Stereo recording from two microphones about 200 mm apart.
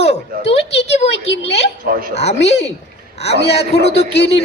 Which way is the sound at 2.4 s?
60° left (ahead or behind).